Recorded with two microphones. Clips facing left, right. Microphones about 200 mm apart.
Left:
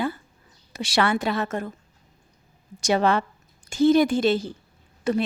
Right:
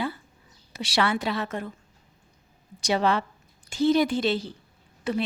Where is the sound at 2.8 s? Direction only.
50° left (ahead or behind).